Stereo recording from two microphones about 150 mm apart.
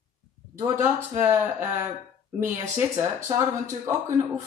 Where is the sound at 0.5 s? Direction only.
20° right (ahead or behind).